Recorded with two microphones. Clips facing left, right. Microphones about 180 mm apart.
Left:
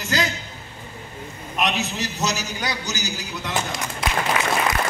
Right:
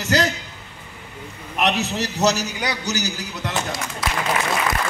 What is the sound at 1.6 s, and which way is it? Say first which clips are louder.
A man's voice: right 3 dB; 65° right (ahead or behind).